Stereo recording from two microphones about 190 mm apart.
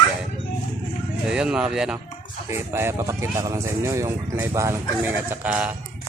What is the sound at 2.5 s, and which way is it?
Speech, 15° right (ahead or behind).